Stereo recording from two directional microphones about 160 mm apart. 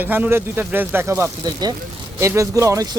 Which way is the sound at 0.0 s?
10° right (ahead or behind).